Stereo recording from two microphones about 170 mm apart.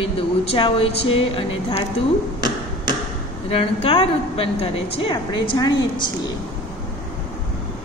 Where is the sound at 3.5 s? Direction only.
35° left (ahead or behind).